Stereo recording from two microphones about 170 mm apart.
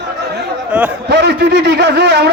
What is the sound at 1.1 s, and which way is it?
A man's voice, 80° right.